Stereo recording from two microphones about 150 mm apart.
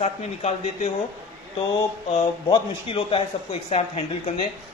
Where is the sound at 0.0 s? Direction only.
45° left (ahead or behind).